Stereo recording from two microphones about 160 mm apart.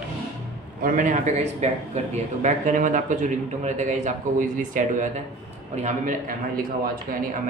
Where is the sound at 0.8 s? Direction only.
55° right (ahead or behind).